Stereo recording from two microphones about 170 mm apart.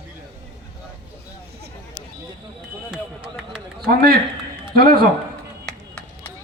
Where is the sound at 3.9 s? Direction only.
65° right (ahead or behind).